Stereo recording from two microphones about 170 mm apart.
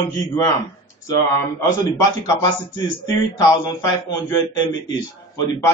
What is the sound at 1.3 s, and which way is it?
A man's voice, 20° left (ahead or behind).